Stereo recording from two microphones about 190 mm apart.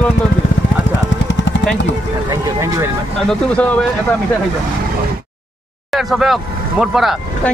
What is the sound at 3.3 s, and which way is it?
Speech, 5° left (ahead or behind).